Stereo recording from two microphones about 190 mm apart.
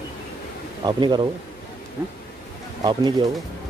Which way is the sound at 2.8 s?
25° right (ahead or behind).